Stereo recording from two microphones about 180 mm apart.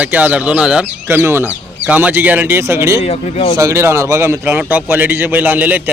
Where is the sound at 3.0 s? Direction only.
35° left (ahead or behind).